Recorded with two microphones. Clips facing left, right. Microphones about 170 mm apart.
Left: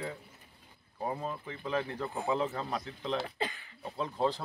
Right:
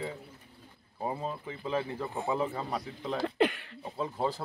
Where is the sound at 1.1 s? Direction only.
20° right (ahead or behind).